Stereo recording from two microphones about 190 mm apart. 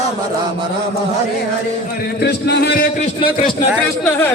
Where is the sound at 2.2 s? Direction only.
60° left (ahead or behind).